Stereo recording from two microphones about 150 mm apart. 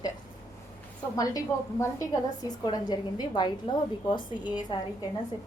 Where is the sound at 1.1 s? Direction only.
25° left (ahead or behind).